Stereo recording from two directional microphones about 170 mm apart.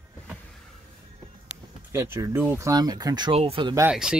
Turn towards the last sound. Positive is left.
turn(degrees=-5)  # may be behind; listen again after turning